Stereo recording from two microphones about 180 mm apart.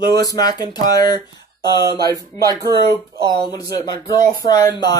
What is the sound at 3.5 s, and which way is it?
Speech, 20° left (ahead or behind).